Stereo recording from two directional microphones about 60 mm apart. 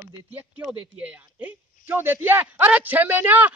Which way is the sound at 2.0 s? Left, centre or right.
Right.